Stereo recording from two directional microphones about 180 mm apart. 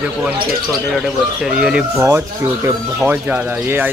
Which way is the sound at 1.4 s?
5° right (ahead or behind).